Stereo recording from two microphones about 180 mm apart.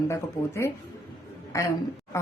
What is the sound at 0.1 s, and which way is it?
A woman's voice, 15° left (ahead or behind).